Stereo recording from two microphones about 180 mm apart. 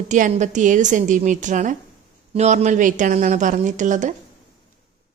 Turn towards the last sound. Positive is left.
turn(degrees=-45)  # may be behind; listen again after turning